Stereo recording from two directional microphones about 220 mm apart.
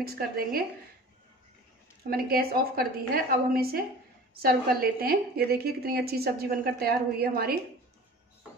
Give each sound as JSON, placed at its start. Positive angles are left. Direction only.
{"t": 0.0, "sound": "a woman's voice", "side_deg": -45}
{"t": 2.0, "sound": "a woman's voice", "side_deg": -45}